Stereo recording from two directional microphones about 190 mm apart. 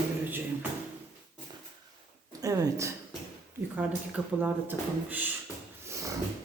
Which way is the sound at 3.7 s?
5° right (ahead or behind).